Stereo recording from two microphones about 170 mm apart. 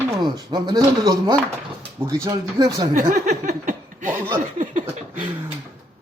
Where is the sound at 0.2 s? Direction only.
25° right (ahead or behind).